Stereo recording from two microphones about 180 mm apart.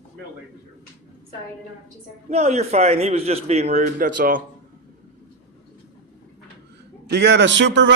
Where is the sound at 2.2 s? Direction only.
40° right (ahead or behind).